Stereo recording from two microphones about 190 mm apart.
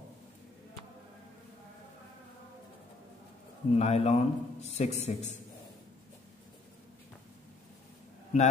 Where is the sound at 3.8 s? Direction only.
35° left (ahead or behind).